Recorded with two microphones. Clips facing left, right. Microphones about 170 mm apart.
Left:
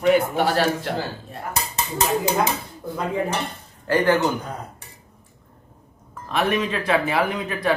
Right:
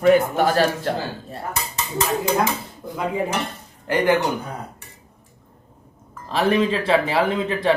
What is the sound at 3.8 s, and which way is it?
Speech, 15° right (ahead or behind).